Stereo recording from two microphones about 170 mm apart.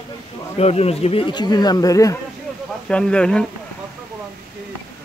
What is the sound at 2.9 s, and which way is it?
Speech, 5° left (ahead or behind).